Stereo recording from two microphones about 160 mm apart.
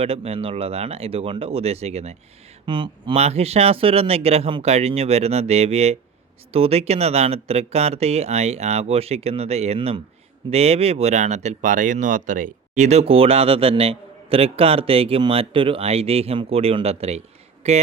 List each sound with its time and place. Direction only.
0.0 s speech: 35° right (ahead or behind)
2.6 s speech: 30° right (ahead or behind)